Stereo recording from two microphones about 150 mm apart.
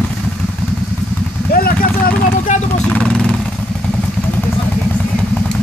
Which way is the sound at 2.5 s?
50° left (ahead or behind).